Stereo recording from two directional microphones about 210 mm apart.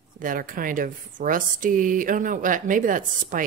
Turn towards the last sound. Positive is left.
turn(degrees=-40)  # may be behind; listen again after turning